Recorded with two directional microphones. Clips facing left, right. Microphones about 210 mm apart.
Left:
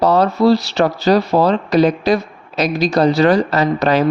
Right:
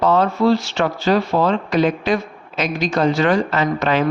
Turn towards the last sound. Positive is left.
turn(degrees=40)  # may be behind; listen again after turning